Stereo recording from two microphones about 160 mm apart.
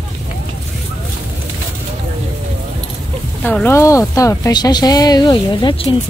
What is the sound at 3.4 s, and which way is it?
A woman's voice, 10° left (ahead or behind).